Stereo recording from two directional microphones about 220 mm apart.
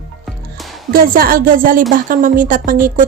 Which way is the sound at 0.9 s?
40° right (ahead or behind).